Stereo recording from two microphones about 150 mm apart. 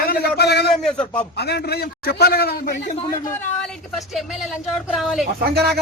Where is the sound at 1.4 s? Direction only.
90° left.